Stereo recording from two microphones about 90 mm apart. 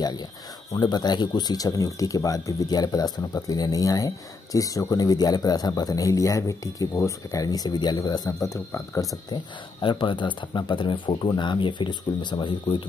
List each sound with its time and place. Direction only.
0.7 s speech: 50° left (ahead or behind)
8.4 s speech: 35° left (ahead or behind)
9.3 s speech: 60° left (ahead or behind)